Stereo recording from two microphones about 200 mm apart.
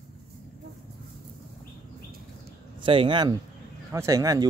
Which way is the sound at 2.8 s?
25° right (ahead or behind).